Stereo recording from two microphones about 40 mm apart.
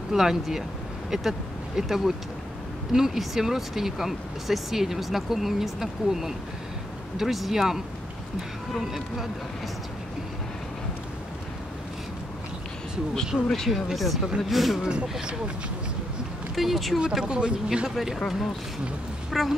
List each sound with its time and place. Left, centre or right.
0.1 s speech: centre
13.3 s speech: left
13.9 s speech: centre
14.8 s speech: right
16.5 s speech: centre
17.2 s speech: right
17.8 s speech: centre
19.3 s speech: centre